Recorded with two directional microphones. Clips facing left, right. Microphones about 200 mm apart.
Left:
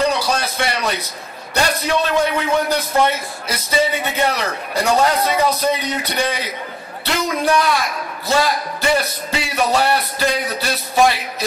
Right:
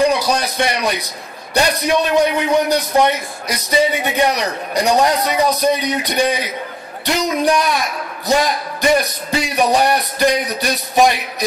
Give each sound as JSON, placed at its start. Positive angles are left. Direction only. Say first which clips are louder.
{"t": 0.0, "sound": "a man's voice", "louder": "right 3 dB", "side_deg": -15}